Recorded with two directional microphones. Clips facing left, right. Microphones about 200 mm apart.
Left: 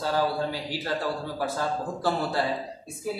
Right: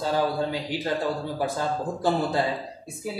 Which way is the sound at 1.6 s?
20° right (ahead or behind).